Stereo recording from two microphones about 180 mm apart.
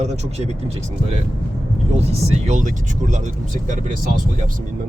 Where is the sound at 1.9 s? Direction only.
35° right (ahead or behind).